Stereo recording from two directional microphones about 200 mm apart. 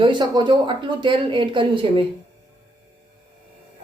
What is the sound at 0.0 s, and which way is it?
Speech, 20° right (ahead or behind).